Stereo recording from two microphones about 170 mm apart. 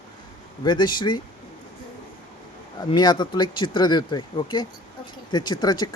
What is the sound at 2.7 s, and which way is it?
Speech, 25° left (ahead or behind).